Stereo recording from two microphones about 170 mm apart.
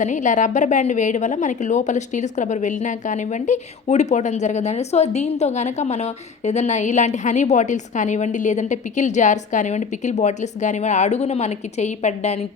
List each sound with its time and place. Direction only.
0.0 s a woman's voice: 45° left (ahead or behind)